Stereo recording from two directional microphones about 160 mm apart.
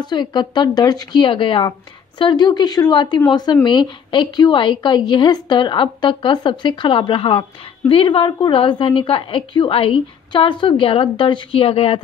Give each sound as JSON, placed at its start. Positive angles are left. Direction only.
{"t": 0.0, "sound": "a woman's voice", "side_deg": 25}